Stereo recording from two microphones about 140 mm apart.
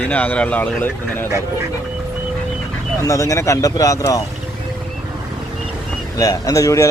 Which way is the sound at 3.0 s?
20° left (ahead or behind).